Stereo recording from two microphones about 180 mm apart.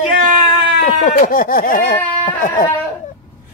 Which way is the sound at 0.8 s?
45° left (ahead or behind).